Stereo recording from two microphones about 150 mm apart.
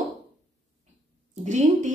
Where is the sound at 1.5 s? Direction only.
55° right (ahead or behind).